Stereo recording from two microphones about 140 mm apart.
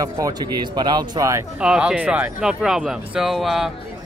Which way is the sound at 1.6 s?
5° right (ahead or behind).